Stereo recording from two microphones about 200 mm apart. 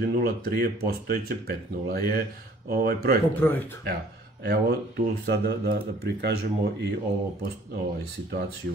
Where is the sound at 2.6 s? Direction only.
50° right (ahead or behind).